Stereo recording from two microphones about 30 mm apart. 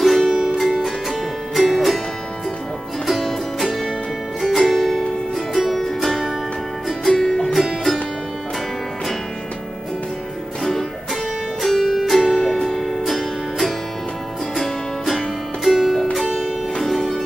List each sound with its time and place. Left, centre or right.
0.0 s music: centre
3.1 s music: centre
7.2 s music: centre
11.6 s music: centre
12.4 s music: centre